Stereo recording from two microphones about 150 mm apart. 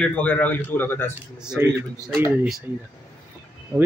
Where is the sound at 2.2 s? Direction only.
5° right (ahead or behind).